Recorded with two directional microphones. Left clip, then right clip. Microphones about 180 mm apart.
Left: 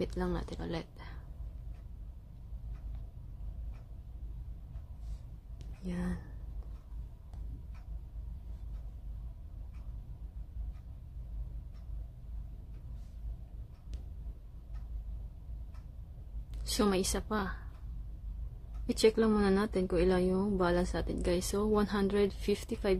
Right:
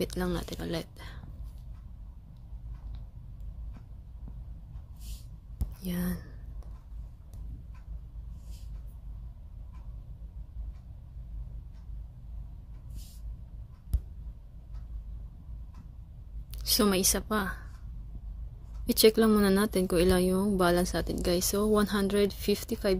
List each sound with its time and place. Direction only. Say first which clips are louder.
0.0 s a woman's voice: right 4 dB; 10° right (ahead or behind)
5.9 s a woman's voice: right 4 dB; 15° right (ahead or behind)
16.6 s a woman's voice: right 5 dB; 10° right (ahead or behind)
18.9 s a woman's voice: right 5 dB; 15° right (ahead or behind)